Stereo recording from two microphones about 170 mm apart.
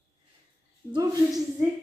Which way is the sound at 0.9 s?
20° right (ahead or behind).